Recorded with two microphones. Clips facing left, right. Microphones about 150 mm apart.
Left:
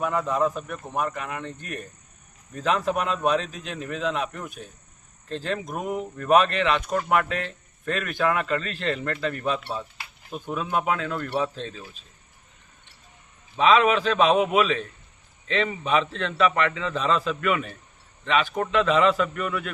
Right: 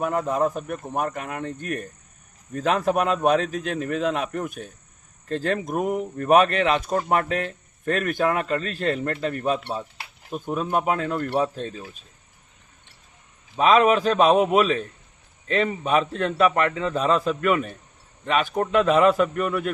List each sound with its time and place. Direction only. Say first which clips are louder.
0.0 s speech: right 1 dB; 45° right (ahead or behind)
13.6 s a man's voice: right 2 dB; 45° right (ahead or behind)